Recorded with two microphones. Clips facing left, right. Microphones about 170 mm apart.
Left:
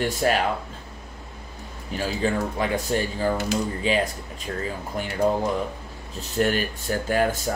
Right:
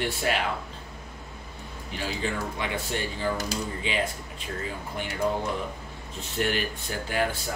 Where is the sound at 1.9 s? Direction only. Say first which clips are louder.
Left 6 dB; 40° left (ahead or behind).